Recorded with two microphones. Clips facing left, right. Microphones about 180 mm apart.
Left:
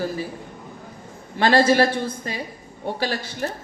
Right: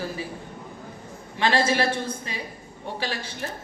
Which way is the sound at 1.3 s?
45° left (ahead or behind).